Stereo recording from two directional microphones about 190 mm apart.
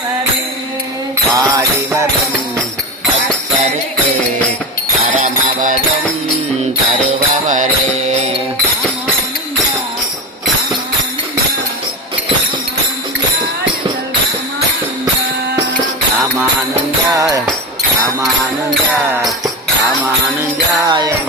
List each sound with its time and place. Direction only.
1.4 s jingle bell: 15° right (ahead or behind)
5.1 s music: 40° right (ahead or behind)
7.4 s music: 40° right (ahead or behind)
17.2 s music: 20° right (ahead or behind)
19.8 s music: 15° right (ahead or behind)
20.8 s jingle bell: 20° right (ahead or behind)